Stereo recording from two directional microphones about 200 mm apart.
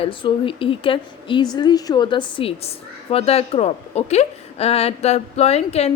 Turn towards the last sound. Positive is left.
turn(degrees=30)  # may be behind; listen again after turning